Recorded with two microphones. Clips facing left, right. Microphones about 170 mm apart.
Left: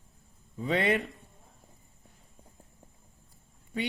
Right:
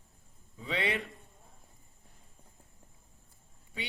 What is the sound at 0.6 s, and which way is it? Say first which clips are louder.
Speech: left 6 dB; 45° left (ahead or behind).